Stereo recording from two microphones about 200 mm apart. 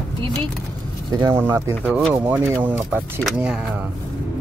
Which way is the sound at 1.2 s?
10° right (ahead or behind).